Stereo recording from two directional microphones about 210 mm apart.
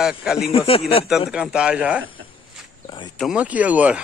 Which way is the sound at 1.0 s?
5° right (ahead or behind).